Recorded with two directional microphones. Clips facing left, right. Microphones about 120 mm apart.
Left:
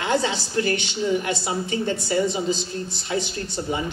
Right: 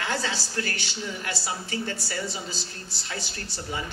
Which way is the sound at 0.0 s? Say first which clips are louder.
Left 7 dB; 20° left (ahead or behind).